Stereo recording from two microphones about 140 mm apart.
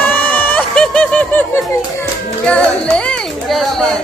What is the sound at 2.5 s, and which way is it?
Speech, 5° left (ahead or behind).